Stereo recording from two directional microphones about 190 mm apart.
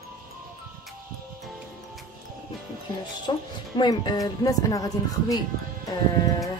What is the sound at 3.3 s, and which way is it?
Speech, 25° left (ahead or behind).